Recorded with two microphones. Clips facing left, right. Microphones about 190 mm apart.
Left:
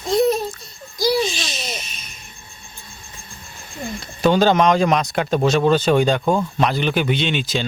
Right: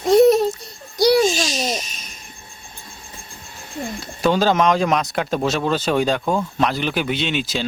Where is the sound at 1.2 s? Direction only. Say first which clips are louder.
Right 5 dB; 45° right (ahead or behind).